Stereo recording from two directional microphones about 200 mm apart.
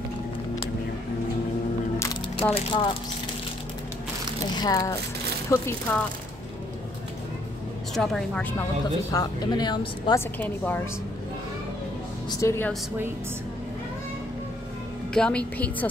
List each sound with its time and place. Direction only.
2.5 s speech: 25° left (ahead or behind)
4.6 s a woman's voice: 20° left (ahead or behind)
7.9 s speech: centre (ahead or behind)
9.1 s speech: 20° left (ahead or behind)
10.4 s a woman's voice: 10° left (ahead or behind)
12.3 s a woman's voice: 15° left (ahead or behind)
15.1 s a woman's voice: 5° left (ahead or behind)